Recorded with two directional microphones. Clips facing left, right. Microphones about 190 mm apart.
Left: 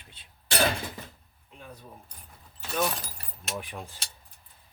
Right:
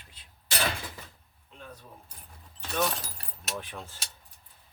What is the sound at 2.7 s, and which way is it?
Speech, centre (ahead or behind).